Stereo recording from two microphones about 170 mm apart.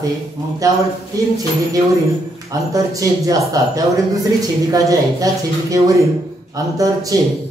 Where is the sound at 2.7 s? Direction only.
20° right (ahead or behind).